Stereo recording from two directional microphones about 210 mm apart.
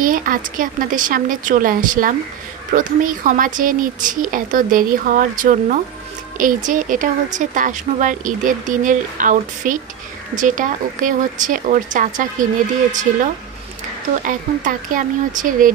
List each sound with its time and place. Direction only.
0.0 s speech: 40° right (ahead or behind)
14.2 s speech: 40° right (ahead or behind)